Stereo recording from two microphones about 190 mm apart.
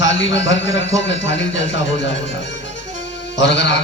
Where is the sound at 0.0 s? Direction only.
75° left (ahead or behind).